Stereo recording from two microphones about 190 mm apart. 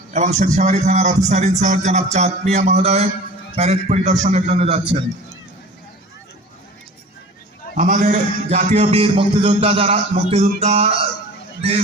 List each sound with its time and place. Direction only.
0.1 s music: 40° right (ahead or behind)
7.8 s music: 45° right (ahead or behind)